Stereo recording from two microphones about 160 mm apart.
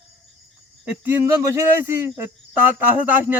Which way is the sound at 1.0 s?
15° right (ahead or behind).